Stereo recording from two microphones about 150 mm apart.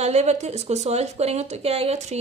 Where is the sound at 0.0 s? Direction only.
50° right (ahead or behind).